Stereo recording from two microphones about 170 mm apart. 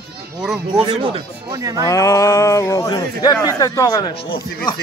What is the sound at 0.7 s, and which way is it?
Speech, 30° right (ahead or behind).